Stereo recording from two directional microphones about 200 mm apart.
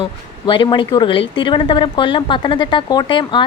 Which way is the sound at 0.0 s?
25° left (ahead or behind).